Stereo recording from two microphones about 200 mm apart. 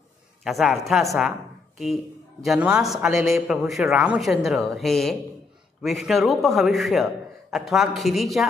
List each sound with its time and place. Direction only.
0.4 s a man's voice: centre (ahead or behind)
2.4 s a man's voice: 5° right (ahead or behind)